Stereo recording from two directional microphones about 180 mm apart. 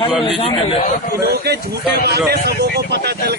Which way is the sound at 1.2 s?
60° right (ahead or behind).